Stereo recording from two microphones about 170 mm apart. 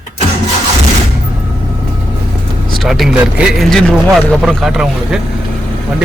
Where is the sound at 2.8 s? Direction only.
Centre (ahead or behind).